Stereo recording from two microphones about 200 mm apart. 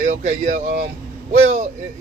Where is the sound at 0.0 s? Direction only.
35° right (ahead or behind).